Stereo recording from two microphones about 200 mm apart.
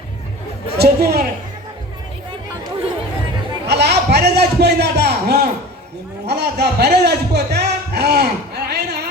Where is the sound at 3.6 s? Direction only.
55° right (ahead or behind).